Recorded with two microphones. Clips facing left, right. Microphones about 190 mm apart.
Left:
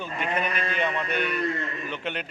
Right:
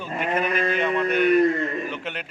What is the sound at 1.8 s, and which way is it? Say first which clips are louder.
Speech: right 1 dB; 5° right (ahead or behind).